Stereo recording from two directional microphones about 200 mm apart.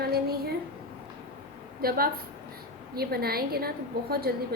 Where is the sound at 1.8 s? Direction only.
50° right (ahead or behind).